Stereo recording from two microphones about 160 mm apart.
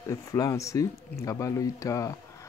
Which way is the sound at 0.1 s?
20° left (ahead or behind).